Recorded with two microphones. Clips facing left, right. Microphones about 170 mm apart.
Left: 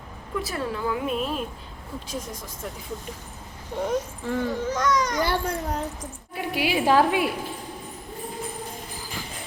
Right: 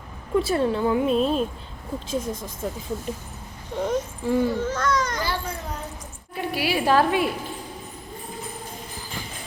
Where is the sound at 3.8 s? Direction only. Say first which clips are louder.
Right 1 dB; 10° left (ahead or behind).